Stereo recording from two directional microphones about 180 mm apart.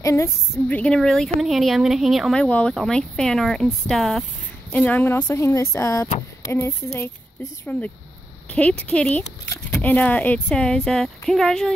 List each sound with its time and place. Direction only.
0.0 s a woman's voice: 15° left (ahead or behind)